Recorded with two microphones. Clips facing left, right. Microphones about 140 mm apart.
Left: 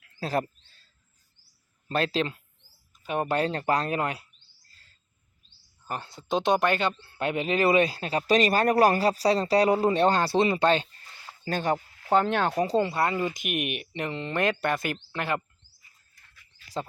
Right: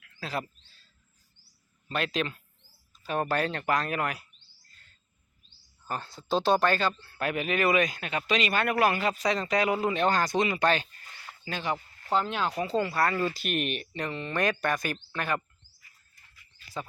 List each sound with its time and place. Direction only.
0.0 s a sound: 35° left (ahead or behind)
1.9 s speech: 35° left (ahead or behind)
2.9 s speech: 20° left (ahead or behind)
4.7 s bird vocalization: 30° left (ahead or behind)
5.9 s speech: 20° left (ahead or behind)
11.4 s speech: 45° left (ahead or behind)
12.1 s speech: 55° left (ahead or behind)
12.6 s speech: 30° left (ahead or behind)